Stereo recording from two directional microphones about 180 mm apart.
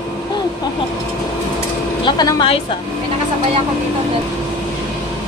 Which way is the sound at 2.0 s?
25° left (ahead or behind).